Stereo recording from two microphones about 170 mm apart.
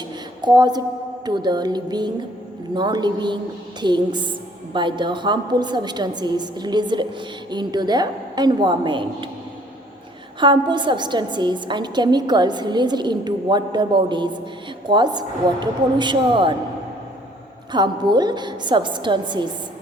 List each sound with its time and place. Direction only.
0.4 s a woman's voice: 25° right (ahead or behind)
10.4 s a woman's voice: 30° right (ahead or behind)
17.7 s a woman's voice: 25° right (ahead or behind)